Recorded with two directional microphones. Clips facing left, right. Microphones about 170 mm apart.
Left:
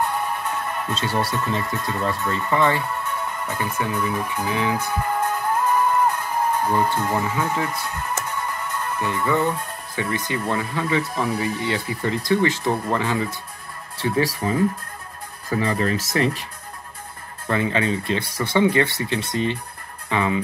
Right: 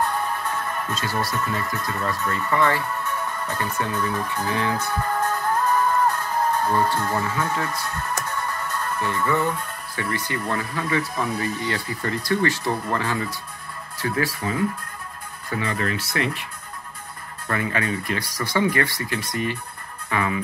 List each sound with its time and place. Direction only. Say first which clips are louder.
0.0 s music: even; 15° left (ahead or behind)
0.9 s speech: left 3 dB; 25° left (ahead or behind)
3.3 s music: left 1 dB; 15° left (ahead or behind)
8.2 s speech: even; 15° left (ahead or behind); by 16.4 s 40° left (ahead or behind)
17.5 s speech: left 4 dB; 20° left (ahead or behind)